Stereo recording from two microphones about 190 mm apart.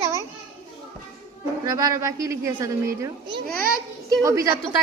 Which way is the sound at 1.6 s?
20° right (ahead or behind).